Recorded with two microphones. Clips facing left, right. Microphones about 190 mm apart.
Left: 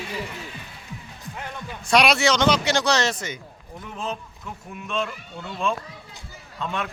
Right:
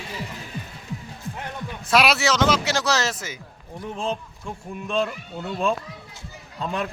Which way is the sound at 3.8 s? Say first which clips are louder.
Right 4 dB; 30° right (ahead or behind).